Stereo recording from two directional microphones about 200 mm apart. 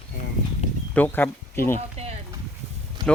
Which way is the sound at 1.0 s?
10° left (ahead or behind).